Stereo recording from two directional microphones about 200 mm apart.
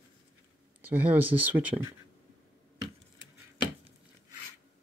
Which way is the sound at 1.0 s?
10° right (ahead or behind).